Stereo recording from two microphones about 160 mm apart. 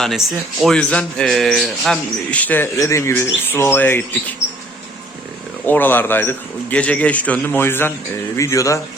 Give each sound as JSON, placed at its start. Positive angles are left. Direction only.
{"t": 0.0, "sound": "a man's voice", "side_deg": 0}
{"t": 5.6, "sound": "a man's voice", "side_deg": 10}